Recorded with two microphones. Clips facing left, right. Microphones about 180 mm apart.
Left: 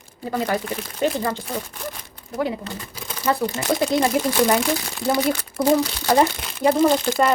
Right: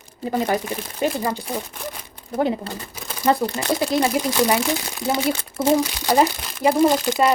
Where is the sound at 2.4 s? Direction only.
35° right (ahead or behind).